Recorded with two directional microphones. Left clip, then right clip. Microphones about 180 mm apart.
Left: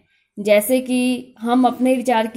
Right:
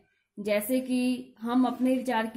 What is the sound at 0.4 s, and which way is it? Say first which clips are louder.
Speech: left 12 dB; 35° left (ahead or behind).